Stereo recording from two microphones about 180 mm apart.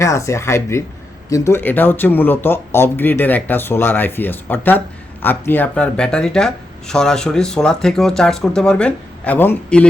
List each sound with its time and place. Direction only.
0.0 s speech: 15° left (ahead or behind)